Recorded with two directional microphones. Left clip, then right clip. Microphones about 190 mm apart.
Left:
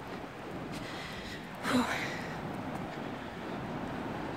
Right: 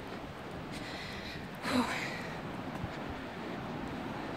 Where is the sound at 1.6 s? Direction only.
10° left (ahead or behind).